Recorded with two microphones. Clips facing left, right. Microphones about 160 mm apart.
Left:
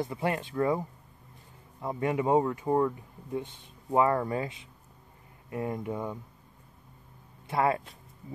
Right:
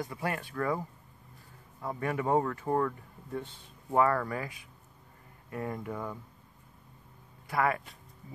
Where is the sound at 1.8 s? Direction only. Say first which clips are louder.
Left 4 dB; 20° left (ahead or behind).